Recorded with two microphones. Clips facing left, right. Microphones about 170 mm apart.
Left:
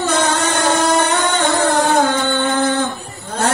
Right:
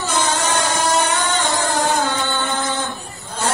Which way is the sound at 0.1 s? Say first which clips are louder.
Even; 60° left (ahead or behind).